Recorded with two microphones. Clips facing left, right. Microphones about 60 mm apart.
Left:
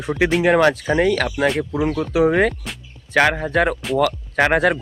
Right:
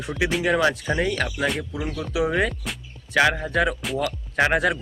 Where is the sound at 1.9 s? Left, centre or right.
Left.